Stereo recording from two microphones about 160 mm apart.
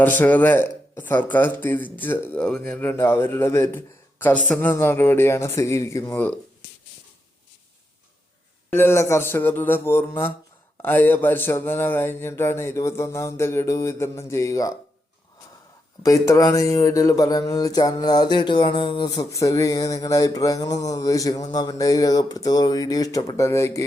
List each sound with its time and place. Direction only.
0.0 s speech: 10° left (ahead or behind)
8.7 s speech: 15° left (ahead or behind)
16.0 s a sound: 20° left (ahead or behind)